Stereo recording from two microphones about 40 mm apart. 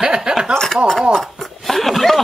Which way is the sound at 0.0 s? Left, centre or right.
Centre.